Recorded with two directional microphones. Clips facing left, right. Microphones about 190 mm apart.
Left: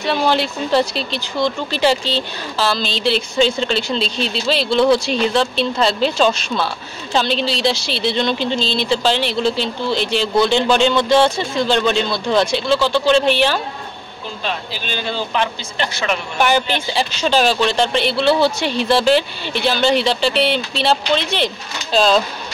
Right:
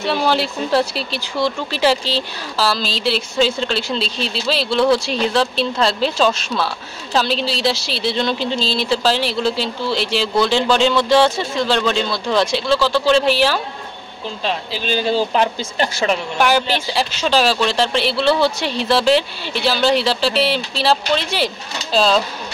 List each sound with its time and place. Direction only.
0.0 s speech: 5° right (ahead or behind)
14.4 s speech: 30° right (ahead or behind)
16.3 s speech: centre (ahead or behind)